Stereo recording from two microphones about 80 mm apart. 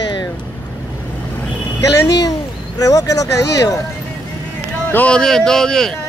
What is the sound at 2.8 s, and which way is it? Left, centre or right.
Speech, left.